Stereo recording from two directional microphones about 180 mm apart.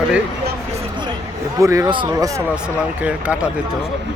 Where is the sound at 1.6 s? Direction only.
20° right (ahead or behind).